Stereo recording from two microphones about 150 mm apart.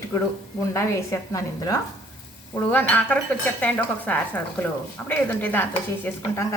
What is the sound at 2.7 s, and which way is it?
A woman's voice, 10° left (ahead or behind).